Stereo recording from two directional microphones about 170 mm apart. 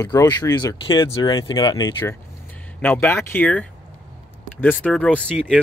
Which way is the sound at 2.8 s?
10° left (ahead or behind).